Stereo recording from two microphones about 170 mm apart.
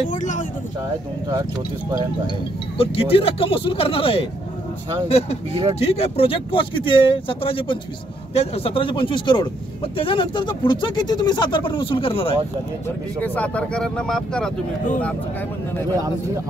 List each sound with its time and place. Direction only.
0.1 s speech: 45° left (ahead or behind)
2.8 s speech: 35° left (ahead or behind)
13.2 s speech: 10° left (ahead or behind)